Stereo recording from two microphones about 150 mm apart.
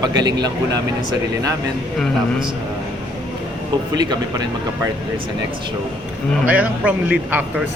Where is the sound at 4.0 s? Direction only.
25° right (ahead or behind).